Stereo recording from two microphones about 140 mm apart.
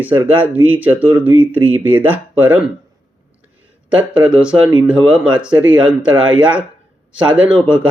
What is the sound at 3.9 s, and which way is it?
Speech, 10° right (ahead or behind).